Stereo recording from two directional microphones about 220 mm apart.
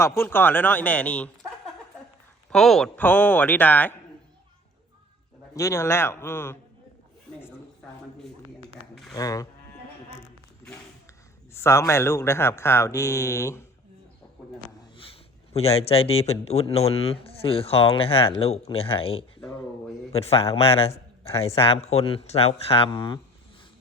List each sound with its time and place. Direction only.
0.2 s speech: 10° left (ahead or behind)
5.5 s speech: 15° left (ahead or behind)
9.1 s speech: 15° left (ahead or behind)
11.6 s speech: 10° left (ahead or behind)
15.5 s speech: 25° left (ahead or behind)